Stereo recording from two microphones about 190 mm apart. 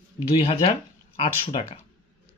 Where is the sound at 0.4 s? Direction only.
30° left (ahead or behind).